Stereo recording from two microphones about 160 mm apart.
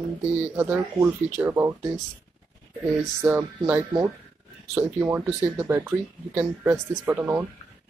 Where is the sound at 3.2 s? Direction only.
15° right (ahead or behind).